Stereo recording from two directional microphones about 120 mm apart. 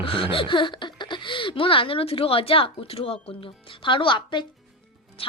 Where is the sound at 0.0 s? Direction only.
45° left (ahead or behind).